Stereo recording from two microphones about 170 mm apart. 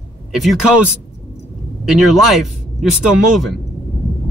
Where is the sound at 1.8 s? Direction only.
Centre (ahead or behind).